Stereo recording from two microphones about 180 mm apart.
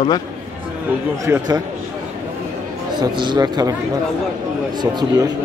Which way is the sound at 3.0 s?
25° right (ahead or behind).